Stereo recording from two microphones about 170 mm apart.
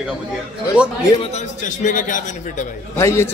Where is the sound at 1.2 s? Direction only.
45° left (ahead or behind).